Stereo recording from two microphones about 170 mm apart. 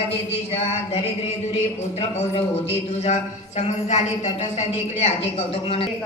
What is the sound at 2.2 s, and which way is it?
Speech, 35° left (ahead or behind).